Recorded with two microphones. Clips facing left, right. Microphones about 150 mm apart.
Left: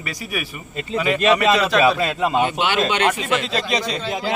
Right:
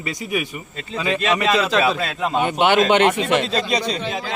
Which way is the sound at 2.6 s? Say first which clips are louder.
Right 5 dB; 55° right (ahead or behind).